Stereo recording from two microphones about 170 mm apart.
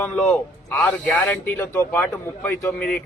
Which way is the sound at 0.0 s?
5° left (ahead or behind).